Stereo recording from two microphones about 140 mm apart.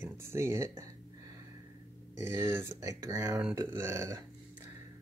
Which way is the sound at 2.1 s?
20° right (ahead or behind).